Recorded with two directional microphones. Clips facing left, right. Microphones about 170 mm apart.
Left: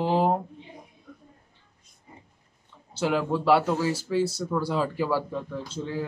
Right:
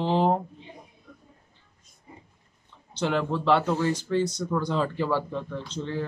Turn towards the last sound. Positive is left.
turn(degrees=10)  # may be behind; listen again after turning